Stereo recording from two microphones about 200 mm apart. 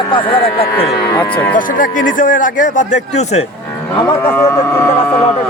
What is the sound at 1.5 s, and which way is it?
A man's voice, 45° left (ahead or behind).